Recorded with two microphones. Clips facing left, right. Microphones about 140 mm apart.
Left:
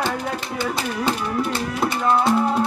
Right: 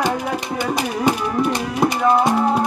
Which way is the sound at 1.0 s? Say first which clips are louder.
Right 4 dB; 15° right (ahead or behind).